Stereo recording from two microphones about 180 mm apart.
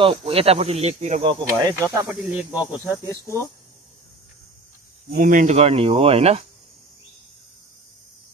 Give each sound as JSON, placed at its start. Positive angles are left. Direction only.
{"t": 0.0, "sound": "speech", "side_deg": -30}
{"t": 5.1, "sound": "speech", "side_deg": -50}